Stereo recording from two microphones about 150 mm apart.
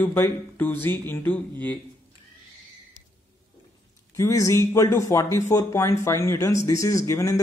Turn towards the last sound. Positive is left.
turn(degrees=20)  # may be behind; listen again after turning